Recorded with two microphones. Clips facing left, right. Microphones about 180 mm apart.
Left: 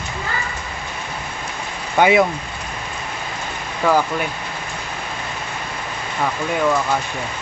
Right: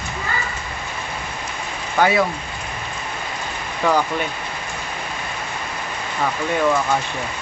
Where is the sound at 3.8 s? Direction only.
5° left (ahead or behind).